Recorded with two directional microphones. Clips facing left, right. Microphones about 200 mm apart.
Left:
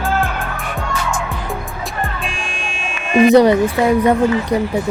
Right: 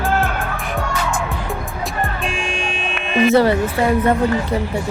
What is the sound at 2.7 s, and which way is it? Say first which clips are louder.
Music: right 2 dB; 60° right (ahead or behind).